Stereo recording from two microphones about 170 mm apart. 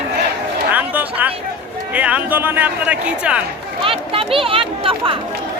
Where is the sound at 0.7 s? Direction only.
10° right (ahead or behind).